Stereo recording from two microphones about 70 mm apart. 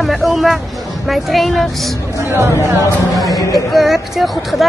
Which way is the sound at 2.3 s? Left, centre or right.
Right.